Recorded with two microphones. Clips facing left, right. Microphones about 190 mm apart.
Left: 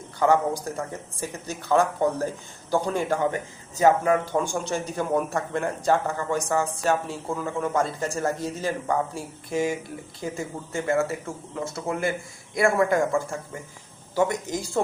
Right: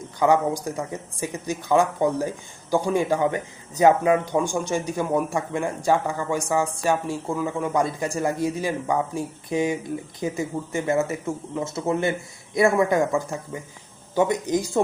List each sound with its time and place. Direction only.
0.2 s a man's voice: 15° right (ahead or behind)